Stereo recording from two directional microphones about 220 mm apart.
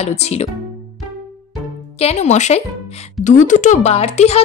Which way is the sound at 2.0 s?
30° left (ahead or behind).